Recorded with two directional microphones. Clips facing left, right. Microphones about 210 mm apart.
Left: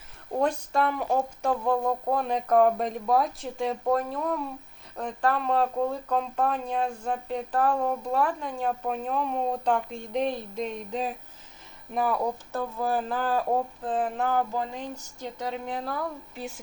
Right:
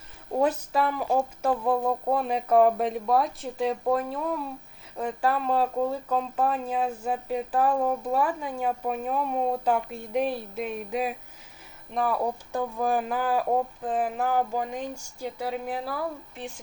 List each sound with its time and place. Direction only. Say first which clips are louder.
0.3 s speech: right 1 dB; 5° right (ahead or behind)
11.9 s speech: even; centre (ahead or behind)
12.5 s speech: right 2 dB; 15° right (ahead or behind)